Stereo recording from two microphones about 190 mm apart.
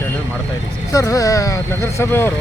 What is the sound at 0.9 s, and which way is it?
Speech, 15° left (ahead or behind).